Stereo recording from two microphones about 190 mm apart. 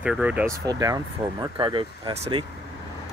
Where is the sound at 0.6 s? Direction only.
20° right (ahead or behind).